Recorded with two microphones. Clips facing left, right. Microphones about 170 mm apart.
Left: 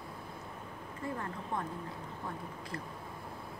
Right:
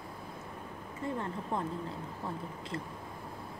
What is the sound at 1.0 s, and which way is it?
Speech, 25° right (ahead or behind).